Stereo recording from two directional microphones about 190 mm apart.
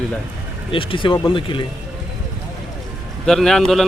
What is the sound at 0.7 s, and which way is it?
Speech, 25° left (ahead or behind).